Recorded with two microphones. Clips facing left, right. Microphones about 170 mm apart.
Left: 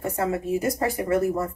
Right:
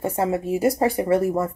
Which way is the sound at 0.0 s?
30° right (ahead or behind).